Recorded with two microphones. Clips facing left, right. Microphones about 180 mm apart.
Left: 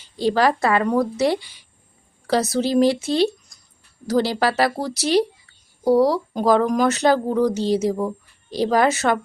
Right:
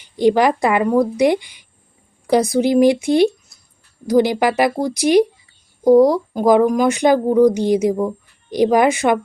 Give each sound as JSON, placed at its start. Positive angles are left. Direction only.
{"t": 0.0, "sound": "speech", "side_deg": -15}